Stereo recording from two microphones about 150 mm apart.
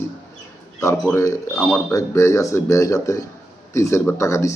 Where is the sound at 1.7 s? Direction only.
20° left (ahead or behind).